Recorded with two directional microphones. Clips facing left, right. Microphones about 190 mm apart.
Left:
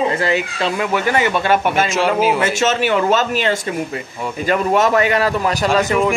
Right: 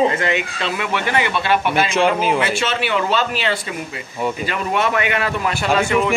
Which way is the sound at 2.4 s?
45° left (ahead or behind).